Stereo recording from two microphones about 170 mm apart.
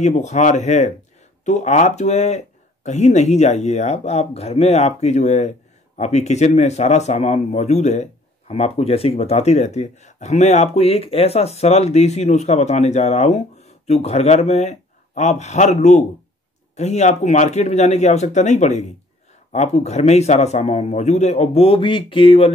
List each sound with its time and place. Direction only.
0.0 s speech: 45° left (ahead or behind)